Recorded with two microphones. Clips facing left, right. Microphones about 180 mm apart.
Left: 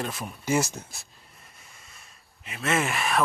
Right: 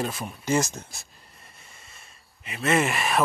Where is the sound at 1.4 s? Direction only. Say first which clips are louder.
Right 2 dB; centre (ahead or behind).